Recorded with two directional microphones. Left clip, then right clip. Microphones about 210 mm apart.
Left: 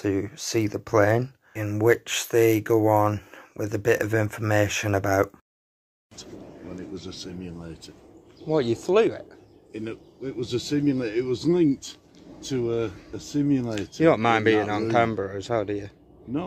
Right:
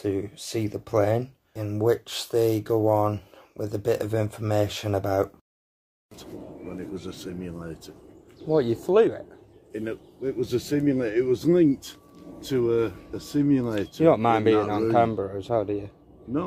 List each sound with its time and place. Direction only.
0.0 s speech: 15° left (ahead or behind)
1.8 s speech: 30° left (ahead or behind)
2.3 s speech: 15° left (ahead or behind)
7.0 s speech: 50° left (ahead or behind)
8.5 s speech: 10° left (ahead or behind)
9.7 s speech: 50° left (ahead or behind)
13.9 s speech: 10° left (ahead or behind)